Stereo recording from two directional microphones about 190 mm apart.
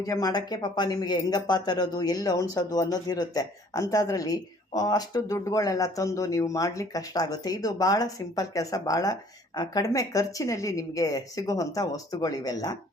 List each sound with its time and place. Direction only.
0.0 s a woman's voice: 20° left (ahead or behind)